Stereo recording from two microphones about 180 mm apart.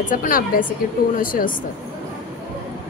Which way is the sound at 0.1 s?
50° left (ahead or behind).